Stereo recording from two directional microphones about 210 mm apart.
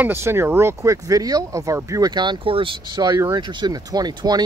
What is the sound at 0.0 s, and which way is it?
Speech, 10° right (ahead or behind).